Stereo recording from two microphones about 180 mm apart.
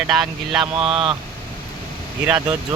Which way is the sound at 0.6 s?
30° right (ahead or behind).